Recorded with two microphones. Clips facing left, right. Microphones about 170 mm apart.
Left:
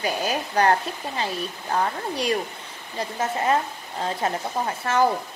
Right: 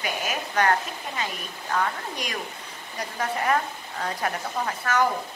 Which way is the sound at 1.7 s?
30° left (ahead or behind).